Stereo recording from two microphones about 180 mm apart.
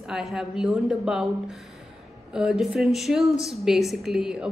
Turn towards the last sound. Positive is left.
turn(degrees=0)  # may be behind; listen again after turning